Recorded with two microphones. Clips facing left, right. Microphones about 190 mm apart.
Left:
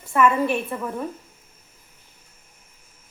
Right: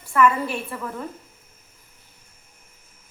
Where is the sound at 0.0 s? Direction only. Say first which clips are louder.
Even; 25° left (ahead or behind).